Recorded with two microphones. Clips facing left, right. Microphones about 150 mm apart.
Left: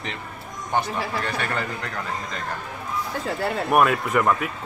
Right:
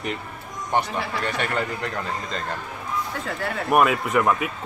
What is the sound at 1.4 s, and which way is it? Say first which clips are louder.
Speech: right 2 dB; 20° right (ahead or behind).